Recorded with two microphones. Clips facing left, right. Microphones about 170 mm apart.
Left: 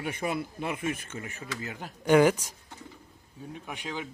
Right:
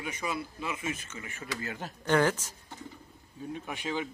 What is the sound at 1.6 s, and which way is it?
Speech, 10° left (ahead or behind).